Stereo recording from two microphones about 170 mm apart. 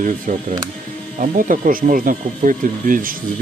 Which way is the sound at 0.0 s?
50° right (ahead or behind).